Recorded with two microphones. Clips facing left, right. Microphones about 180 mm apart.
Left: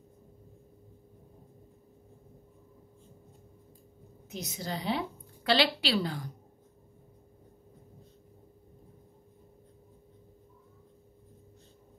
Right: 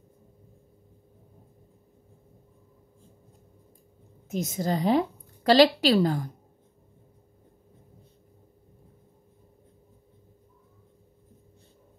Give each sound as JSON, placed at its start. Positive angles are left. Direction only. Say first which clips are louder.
{"t": 4.3, "sound": "a woman's voice", "louder": "right 9 dB", "side_deg": -50}